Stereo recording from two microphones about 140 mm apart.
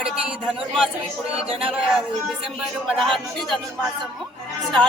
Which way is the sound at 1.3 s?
45° right (ahead or behind).